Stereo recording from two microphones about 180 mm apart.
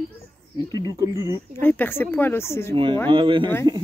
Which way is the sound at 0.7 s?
20° right (ahead or behind).